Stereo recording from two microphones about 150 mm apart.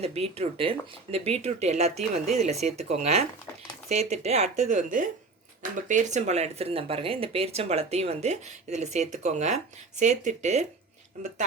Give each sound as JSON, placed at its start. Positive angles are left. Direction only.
{"t": 0.0, "sound": "speech", "side_deg": -40}
{"t": 4.7, "sound": "speech", "side_deg": -60}